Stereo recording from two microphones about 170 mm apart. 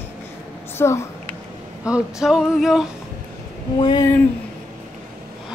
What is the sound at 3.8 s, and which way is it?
Speech, 25° left (ahead or behind).